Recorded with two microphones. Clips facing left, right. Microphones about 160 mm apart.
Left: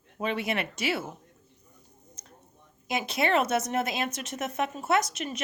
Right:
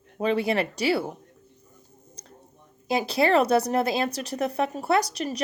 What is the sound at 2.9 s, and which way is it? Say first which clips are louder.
Speech: right 5 dB; 35° right (ahead or behind).